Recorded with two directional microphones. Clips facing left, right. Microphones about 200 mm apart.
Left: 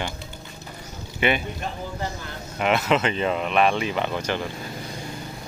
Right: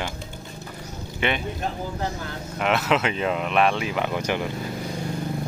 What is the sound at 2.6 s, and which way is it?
Speech, centre (ahead or behind).